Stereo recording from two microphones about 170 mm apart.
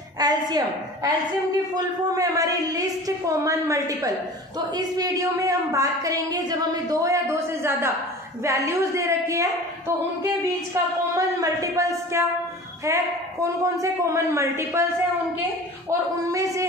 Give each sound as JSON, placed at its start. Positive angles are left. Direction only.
{"t": 0.2, "sound": "a woman's voice", "side_deg": -25}
{"t": 16.2, "sound": "a woman's voice", "side_deg": -20}